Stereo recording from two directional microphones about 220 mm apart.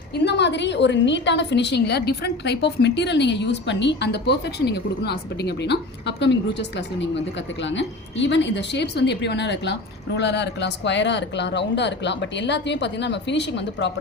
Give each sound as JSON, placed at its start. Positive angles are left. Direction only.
{"t": 0.1, "sound": "a woman's voice", "side_deg": 50}